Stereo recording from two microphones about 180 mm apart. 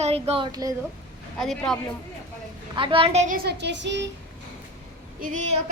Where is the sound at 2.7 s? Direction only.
30° right (ahead or behind).